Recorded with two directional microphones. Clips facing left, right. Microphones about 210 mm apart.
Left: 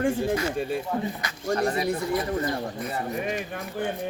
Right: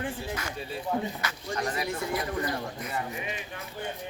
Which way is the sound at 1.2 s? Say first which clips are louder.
Left 7 dB; 40° left (ahead or behind).